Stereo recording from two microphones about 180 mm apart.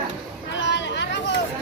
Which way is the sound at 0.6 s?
80° left.